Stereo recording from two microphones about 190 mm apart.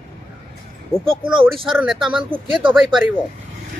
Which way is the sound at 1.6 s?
Centre (ahead or behind).